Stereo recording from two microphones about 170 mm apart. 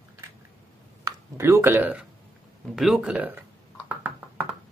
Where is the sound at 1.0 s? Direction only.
15° right (ahead or behind).